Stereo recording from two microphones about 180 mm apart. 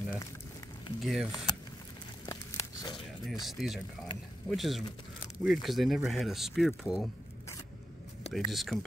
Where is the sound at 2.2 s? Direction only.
20° left (ahead or behind).